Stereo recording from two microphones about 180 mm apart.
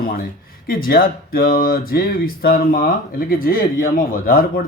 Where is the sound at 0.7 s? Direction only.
55° left (ahead or behind).